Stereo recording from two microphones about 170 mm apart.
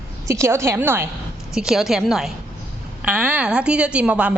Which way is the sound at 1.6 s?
Centre (ahead or behind).